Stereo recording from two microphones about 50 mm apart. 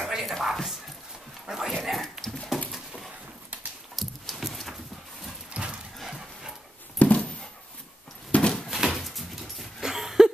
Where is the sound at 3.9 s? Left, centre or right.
Centre.